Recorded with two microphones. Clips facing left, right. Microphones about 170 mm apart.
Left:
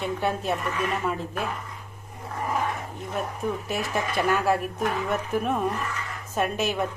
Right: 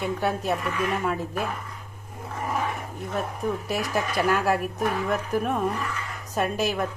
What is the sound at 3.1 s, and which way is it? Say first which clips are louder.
Speech: right 1 dB; centre (ahead or behind).